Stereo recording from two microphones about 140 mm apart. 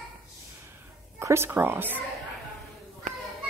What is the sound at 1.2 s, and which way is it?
Speech, 20° right (ahead or behind).